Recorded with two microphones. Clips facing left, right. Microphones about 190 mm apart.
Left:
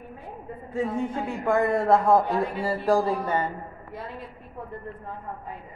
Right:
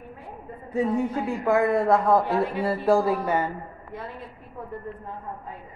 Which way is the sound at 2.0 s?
25° left (ahead or behind).